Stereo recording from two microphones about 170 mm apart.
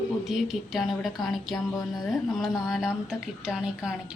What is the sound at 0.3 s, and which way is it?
A woman's voice, centre (ahead or behind).